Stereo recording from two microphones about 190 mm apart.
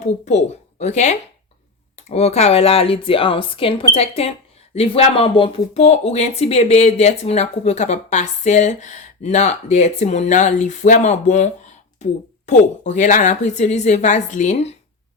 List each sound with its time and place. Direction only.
0.0 s speech: 35° left (ahead or behind)